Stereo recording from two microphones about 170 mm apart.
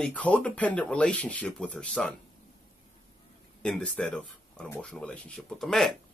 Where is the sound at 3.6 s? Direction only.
5° left (ahead or behind).